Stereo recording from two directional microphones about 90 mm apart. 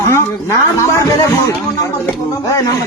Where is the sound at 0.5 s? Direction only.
35° left (ahead or behind).